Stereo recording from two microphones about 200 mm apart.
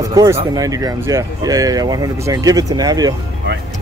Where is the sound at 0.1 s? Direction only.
15° right (ahead or behind).